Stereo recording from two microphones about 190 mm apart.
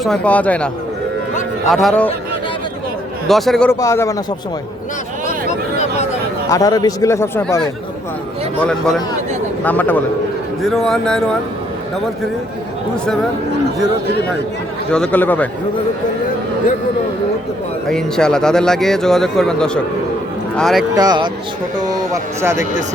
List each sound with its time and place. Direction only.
0.0 s a man's voice: 5° left (ahead or behind)
3.2 s speech: centre (ahead or behind)
3.7 s a man's voice: 15° left (ahead or behind)
5.5 s a sound: 35° left (ahead or behind)
6.5 s a man's voice: 20° left (ahead or behind)
8.6 s a man's voice: 5° left (ahead or behind)
14.8 s a man's voice: 5° left (ahead or behind)
17.8 s speech: 5° left (ahead or behind)
20.9 s speech: 20° right (ahead or behind)